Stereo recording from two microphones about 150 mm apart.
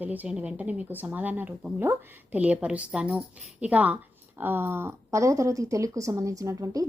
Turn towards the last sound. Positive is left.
turn(degrees=-25)  # may be behind; listen again after turning